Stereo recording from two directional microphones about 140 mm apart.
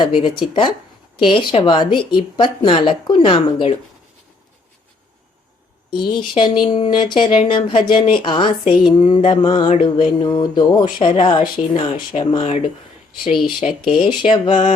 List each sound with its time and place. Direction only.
0.0 s a woman's voice: 35° left (ahead or behind)
5.9 s a woman's voice: 35° left (ahead or behind); by 12.7 s 50° left (ahead or behind)
13.2 s speech: centre (ahead or behind)
14.2 s a woman's voice: 40° left (ahead or behind)